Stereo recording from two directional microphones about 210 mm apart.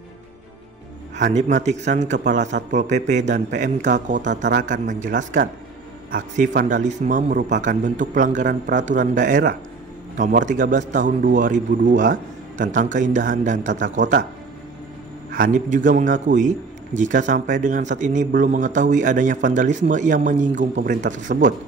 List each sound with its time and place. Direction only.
1.1 s a man's voice: 35° right (ahead or behind)
15.3 s a man's voice: 40° right (ahead or behind)